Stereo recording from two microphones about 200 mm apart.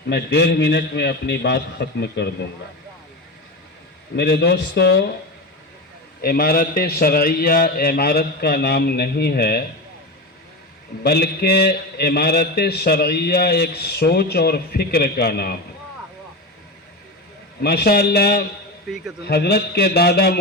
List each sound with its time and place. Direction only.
0.1 s a man's voice: 55° left (ahead or behind)
4.1 s a man's voice: 55° left (ahead or behind)
6.2 s a man's voice: 45° left (ahead or behind)
11.0 s a man's voice: 55° left (ahead or behind)
17.6 s a man's voice: 55° left (ahead or behind)